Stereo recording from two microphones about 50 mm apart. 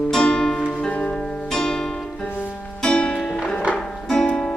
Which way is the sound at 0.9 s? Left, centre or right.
Left.